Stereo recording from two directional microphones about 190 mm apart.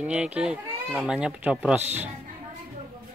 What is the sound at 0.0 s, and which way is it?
Speech, 5° right (ahead or behind).